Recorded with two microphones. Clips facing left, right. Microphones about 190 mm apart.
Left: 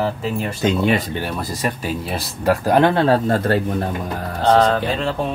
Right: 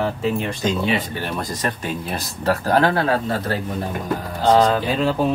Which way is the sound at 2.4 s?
15° left (ahead or behind).